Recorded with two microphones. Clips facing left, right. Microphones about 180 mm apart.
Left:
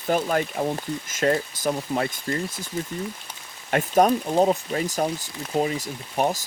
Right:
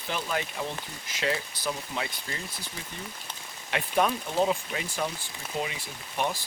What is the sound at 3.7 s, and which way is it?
Speech, 45° left (ahead or behind).